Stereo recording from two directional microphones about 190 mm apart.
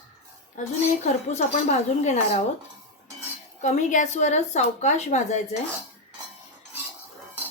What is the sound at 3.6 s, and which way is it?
A woman's voice, 40° left (ahead or behind).